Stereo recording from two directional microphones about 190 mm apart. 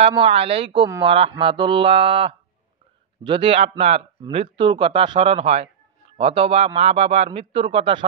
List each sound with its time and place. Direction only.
0.0 s a man's voice: 30° right (ahead or behind)